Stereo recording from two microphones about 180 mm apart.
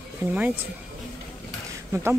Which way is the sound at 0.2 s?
10° right (ahead or behind).